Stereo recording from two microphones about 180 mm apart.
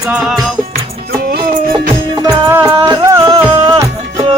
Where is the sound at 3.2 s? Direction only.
30° right (ahead or behind).